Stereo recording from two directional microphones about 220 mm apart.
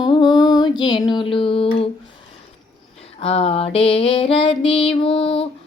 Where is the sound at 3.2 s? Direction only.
25° left (ahead or behind).